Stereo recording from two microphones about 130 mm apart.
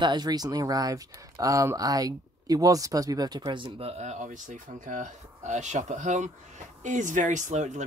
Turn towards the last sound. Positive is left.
turn(degrees=-65)  # may be behind; listen again after turning